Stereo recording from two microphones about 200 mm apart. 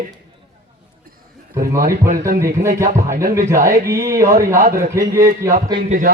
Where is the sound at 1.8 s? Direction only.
45° right (ahead or behind).